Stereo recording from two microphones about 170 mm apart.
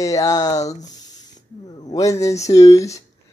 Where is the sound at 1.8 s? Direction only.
20° left (ahead or behind).